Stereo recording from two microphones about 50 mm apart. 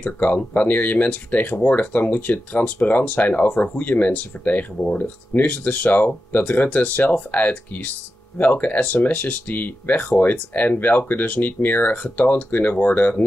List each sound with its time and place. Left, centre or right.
0.0 s speech: left